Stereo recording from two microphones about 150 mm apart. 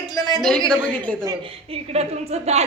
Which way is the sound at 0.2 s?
25° left (ahead or behind).